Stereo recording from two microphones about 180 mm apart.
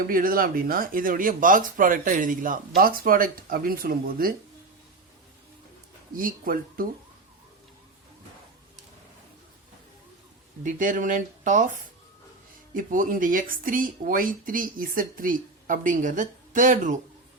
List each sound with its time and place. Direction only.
0.1 s speech: 55° right (ahead or behind)
6.1 s speech: 50° right (ahead or behind)
10.6 s speech: 45° right (ahead or behind)
12.7 s speech: 50° right (ahead or behind)